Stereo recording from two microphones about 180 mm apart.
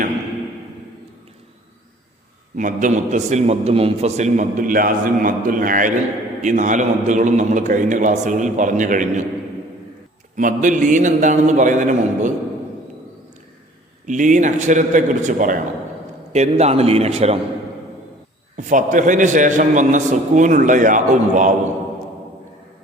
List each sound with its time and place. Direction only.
2.6 s a man's voice: 45° right (ahead or behind)
10.3 s a man's voice: 45° right (ahead or behind)
14.1 s a man's voice: 45° right (ahead or behind)
18.5 s a man's voice: 45° right (ahead or behind)